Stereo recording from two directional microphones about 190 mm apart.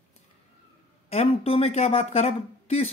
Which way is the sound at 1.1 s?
35° left (ahead or behind).